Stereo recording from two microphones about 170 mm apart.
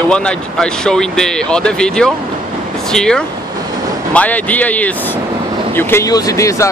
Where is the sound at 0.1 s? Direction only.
5° left (ahead or behind).